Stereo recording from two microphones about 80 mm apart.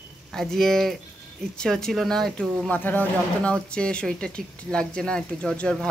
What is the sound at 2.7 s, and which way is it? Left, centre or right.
Speech, left.